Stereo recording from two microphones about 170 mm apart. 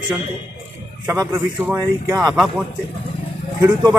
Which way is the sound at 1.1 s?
15° right (ahead or behind).